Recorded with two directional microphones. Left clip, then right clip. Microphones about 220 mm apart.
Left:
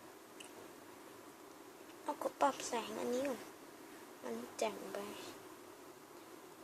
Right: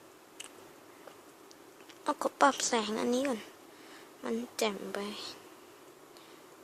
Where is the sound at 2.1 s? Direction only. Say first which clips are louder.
Right 8 dB; 50° right (ahead or behind).